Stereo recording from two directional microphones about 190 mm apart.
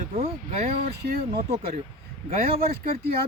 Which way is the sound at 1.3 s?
25° right (ahead or behind).